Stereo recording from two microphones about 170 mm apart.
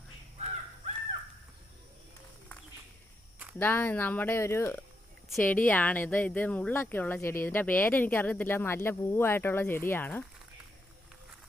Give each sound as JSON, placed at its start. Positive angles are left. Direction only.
{"t": 0.4, "sound": "crow", "side_deg": -40}
{"t": 3.6, "sound": "speech", "side_deg": 10}